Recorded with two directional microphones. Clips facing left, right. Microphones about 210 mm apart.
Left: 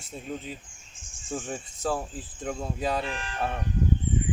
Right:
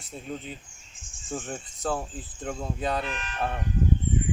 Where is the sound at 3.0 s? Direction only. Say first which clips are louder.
Left 1 dB; 30° left (ahead or behind).